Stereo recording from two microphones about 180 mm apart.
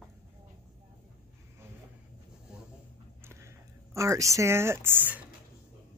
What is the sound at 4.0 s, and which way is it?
Speech, 15° right (ahead or behind).